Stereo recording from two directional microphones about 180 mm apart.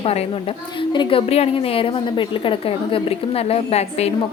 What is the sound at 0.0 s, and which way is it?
A woman's voice, 35° left (ahead or behind).